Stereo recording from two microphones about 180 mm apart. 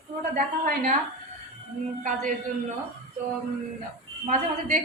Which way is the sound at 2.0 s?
45° right (ahead or behind).